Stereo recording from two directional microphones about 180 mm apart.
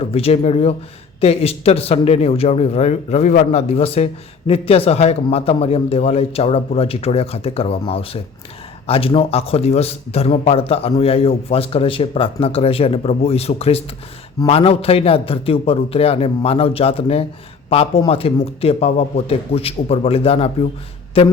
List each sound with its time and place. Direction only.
0.0 s speech: 35° left (ahead or behind)